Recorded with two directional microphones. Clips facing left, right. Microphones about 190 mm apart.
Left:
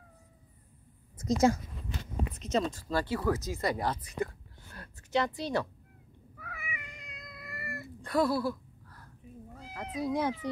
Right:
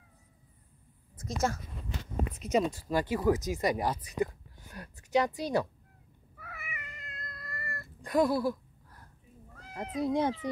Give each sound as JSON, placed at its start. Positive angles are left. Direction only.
{"t": 1.2, "sound": "speech", "side_deg": 15}
{"t": 2.3, "sound": "speech", "side_deg": -10}
{"t": 6.3, "sound": "cat", "side_deg": -5}
{"t": 8.0, "sound": "a sound", "side_deg": -15}
{"t": 9.9, "sound": "speech", "side_deg": -20}